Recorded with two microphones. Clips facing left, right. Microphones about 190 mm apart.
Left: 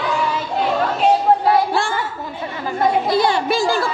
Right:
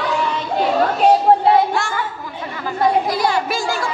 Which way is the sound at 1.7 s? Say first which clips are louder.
Left 2 dB; 30° left (ahead or behind).